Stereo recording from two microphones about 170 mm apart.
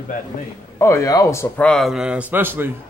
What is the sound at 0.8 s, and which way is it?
Speech, 20° left (ahead or behind).